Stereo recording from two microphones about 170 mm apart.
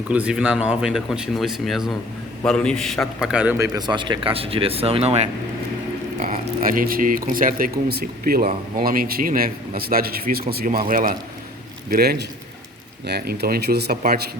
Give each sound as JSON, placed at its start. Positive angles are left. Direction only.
{"t": 0.1, "sound": "speech", "side_deg": -5}
{"t": 3.8, "sound": "speech", "side_deg": -25}
{"t": 6.1, "sound": "a man's voice", "side_deg": -50}